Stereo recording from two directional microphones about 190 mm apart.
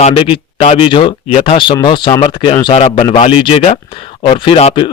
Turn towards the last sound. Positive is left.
turn(degrees=30)  # may be behind; listen again after turning